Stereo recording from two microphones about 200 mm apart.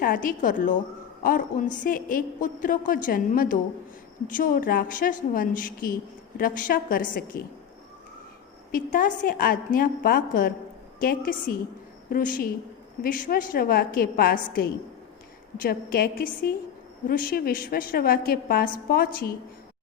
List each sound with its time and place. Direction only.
0.0 s a woman's voice: 45° left (ahead or behind)
8.7 s a woman's voice: 45° left (ahead or behind)